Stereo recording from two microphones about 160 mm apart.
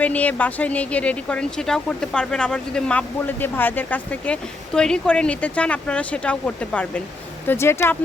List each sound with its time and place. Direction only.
0.0 s speech: 10° left (ahead or behind)